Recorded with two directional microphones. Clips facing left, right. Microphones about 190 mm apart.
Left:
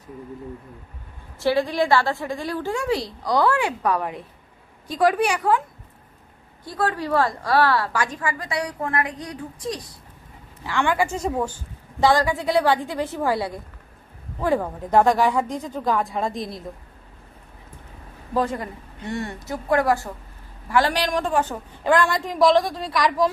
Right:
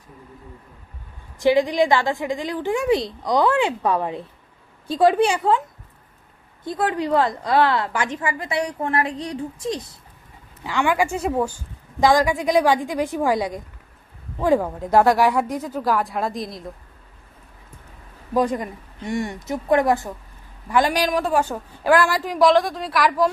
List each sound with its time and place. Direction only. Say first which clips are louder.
1.4 s a woman's voice: right 4 dB; 15° right (ahead or behind)
6.6 s a woman's voice: right 2 dB; 20° right (ahead or behind)
10.6 s speech: right 1 dB; 15° right (ahead or behind)
18.3 s a woman's voice: right 3 dB; 15° right (ahead or behind)